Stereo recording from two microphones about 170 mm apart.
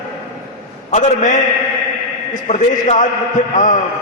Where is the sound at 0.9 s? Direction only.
45° left (ahead or behind).